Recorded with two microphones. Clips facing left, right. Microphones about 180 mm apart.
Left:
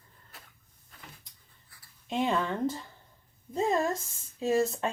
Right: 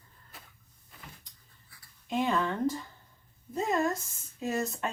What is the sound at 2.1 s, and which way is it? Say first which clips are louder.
Speech: even; 25° left (ahead or behind).